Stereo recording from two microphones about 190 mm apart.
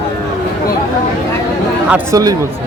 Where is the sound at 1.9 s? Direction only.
15° right (ahead or behind).